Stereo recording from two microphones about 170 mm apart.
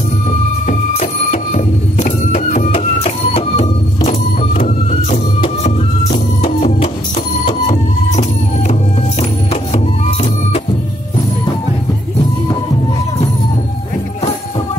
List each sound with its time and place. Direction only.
0.7 s music: 45° left (ahead or behind)